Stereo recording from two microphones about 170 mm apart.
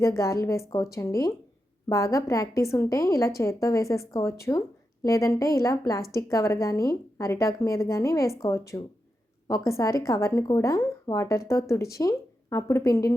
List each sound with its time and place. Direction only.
0.0 s speech: 15° left (ahead or behind)